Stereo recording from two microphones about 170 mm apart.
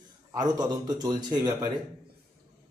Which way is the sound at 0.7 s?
25° right (ahead or behind).